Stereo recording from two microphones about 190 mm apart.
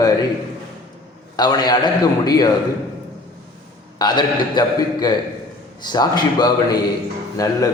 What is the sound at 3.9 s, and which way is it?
A man's voice, 20° left (ahead or behind).